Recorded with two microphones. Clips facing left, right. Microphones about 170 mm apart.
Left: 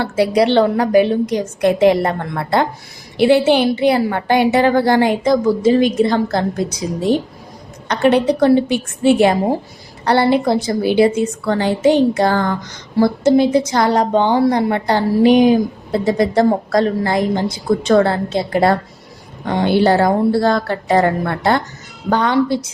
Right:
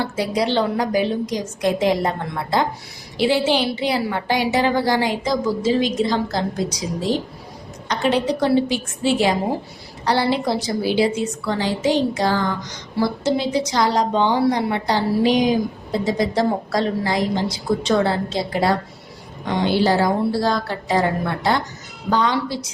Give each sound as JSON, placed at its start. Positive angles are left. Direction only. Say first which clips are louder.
{"t": 0.0, "sound": "a woman's voice", "louder": "left 7 dB", "side_deg": 65}